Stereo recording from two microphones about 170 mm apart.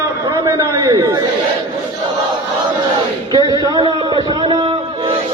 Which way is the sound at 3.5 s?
25° right (ahead or behind).